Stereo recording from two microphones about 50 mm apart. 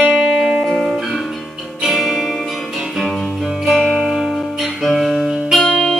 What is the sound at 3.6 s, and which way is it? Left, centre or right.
Music, centre.